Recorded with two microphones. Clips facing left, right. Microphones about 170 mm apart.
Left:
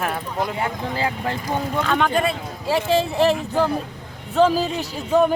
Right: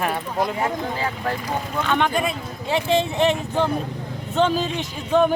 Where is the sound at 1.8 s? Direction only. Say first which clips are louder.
Even; centre (ahead or behind).